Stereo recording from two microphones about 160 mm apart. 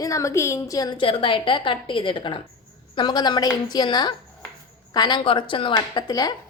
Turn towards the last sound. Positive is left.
turn(degrees=25)  # may be behind; listen again after turning